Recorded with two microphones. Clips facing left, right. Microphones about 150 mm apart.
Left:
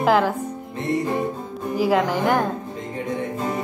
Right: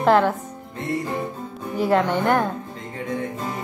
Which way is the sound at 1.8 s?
5° left (ahead or behind).